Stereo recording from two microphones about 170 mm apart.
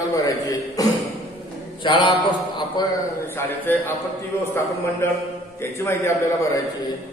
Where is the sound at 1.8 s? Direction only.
25° left (ahead or behind).